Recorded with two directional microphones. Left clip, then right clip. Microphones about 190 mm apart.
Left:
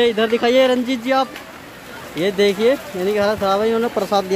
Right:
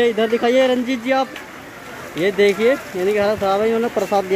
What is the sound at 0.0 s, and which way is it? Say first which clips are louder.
Speech: even; 15° left (ahead or behind).